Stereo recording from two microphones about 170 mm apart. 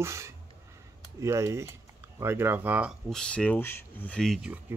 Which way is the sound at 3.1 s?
5° left (ahead or behind).